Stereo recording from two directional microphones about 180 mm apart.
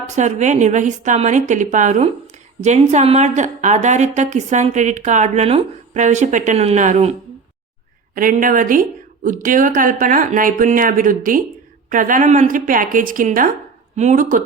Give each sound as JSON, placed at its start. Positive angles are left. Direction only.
{"t": 0.2, "sound": "a woman's voice", "side_deg": -40}
{"t": 8.1, "sound": "speech", "side_deg": -50}